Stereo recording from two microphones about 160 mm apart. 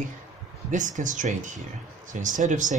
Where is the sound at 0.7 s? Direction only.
50° right (ahead or behind).